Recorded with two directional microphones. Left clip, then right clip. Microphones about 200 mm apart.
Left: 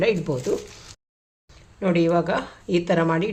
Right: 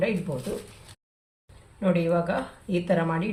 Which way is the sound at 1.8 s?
45° left (ahead or behind).